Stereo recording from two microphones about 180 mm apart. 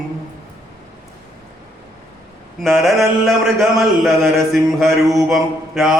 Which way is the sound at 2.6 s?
Centre (ahead or behind).